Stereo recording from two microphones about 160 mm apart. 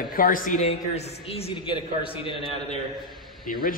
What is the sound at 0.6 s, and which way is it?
Speech, 40° left (ahead or behind).